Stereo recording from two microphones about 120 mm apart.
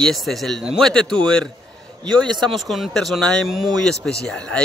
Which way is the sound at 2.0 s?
40° right (ahead or behind).